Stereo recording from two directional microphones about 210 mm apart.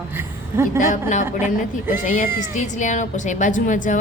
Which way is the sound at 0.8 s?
35° left (ahead or behind).